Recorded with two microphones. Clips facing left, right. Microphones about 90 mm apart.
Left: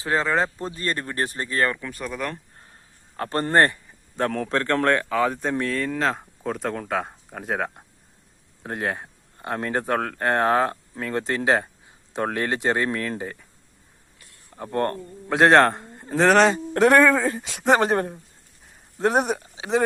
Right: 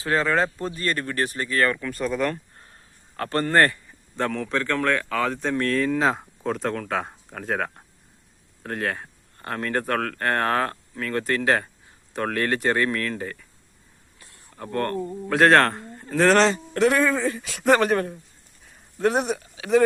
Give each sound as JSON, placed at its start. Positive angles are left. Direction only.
{"t": 0.0, "sound": "speech", "side_deg": 20}
{"t": 1.7, "sound": "speech", "side_deg": 5}
{"t": 3.2, "sound": "speech", "side_deg": 25}
{"t": 4.4, "sound": "speech", "side_deg": 35}
{"t": 5.0, "sound": "speech", "side_deg": 15}
{"t": 14.2, "sound": "a sound", "side_deg": -25}
{"t": 14.5, "sound": "a man's voice", "side_deg": 20}
{"t": 16.7, "sound": "speech", "side_deg": 50}
{"t": 17.2, "sound": "speech", "side_deg": 35}
{"t": 17.5, "sound": "speech", "side_deg": 20}
{"t": 19.5, "sound": "a sound", "side_deg": 25}